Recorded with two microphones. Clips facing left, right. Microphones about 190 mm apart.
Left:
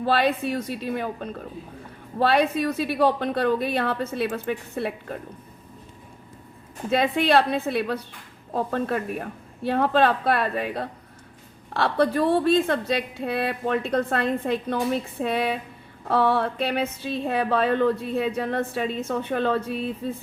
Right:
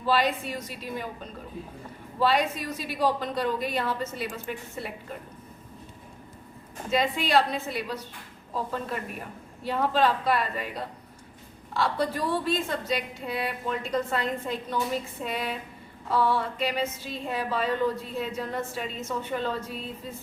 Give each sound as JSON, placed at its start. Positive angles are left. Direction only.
{"t": 0.0, "sound": "a woman's voice", "side_deg": 60}
{"t": 6.9, "sound": "a woman's voice", "side_deg": 60}